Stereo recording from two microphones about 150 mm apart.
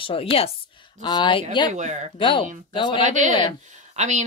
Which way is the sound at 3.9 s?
55° right (ahead or behind).